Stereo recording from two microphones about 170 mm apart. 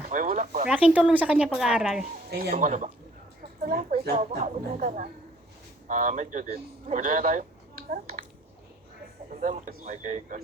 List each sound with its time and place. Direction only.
0.1 s speech: 50° right (ahead or behind)
0.7 s speech: 5° right (ahead or behind)
2.4 s speech: 50° right (ahead or behind)
9.3 s speech: 45° right (ahead or behind)